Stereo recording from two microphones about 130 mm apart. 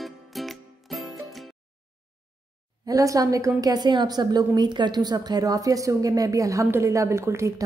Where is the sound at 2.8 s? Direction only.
25° right (ahead or behind).